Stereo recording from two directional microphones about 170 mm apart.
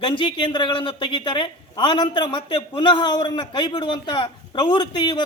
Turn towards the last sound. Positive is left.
turn(degrees=25)  # may be behind; listen again after turning